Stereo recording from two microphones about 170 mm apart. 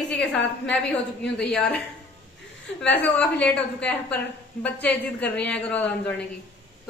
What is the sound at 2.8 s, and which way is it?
A woman's voice, 10° left (ahead or behind).